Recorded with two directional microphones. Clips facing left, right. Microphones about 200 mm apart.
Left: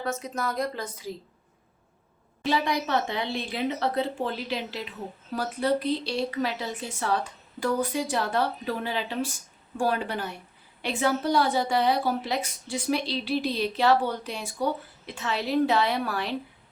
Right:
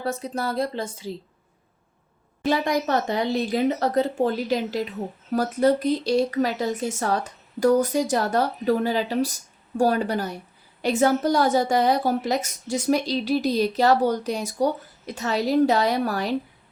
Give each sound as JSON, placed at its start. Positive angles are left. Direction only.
{"t": 0.0, "sound": "a woman's voice", "side_deg": -35}
{"t": 2.4, "sound": "a woman's voice", "side_deg": -45}